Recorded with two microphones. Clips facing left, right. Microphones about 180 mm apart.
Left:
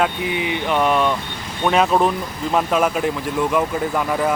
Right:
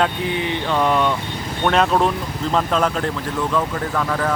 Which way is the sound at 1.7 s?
5° left (ahead or behind).